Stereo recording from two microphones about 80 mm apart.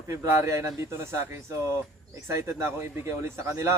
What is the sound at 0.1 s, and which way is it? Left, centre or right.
Speech, right.